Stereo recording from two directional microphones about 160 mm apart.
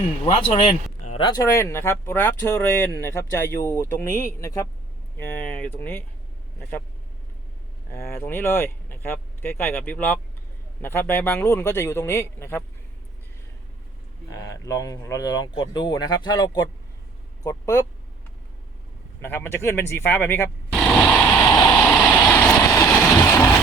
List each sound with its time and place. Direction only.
0.3 s speech: 40° left (ahead or behind)
1.2 s speech: 25° left (ahead or behind)
5.3 s speech: 10° left (ahead or behind)
8.1 s speech: 15° left (ahead or behind)
14.3 s speech: 20° left (ahead or behind)
19.2 s speech: 15° left (ahead or behind)
20.7 s vehicle: 5° left (ahead or behind)